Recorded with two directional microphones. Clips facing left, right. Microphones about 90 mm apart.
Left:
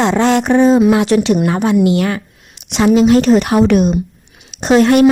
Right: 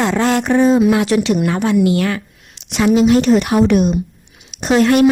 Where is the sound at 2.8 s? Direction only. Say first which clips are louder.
Left 2 dB; 35° left (ahead or behind).